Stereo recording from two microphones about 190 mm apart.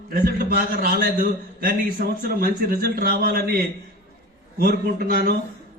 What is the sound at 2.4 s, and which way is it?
A man's voice, 50° right (ahead or behind).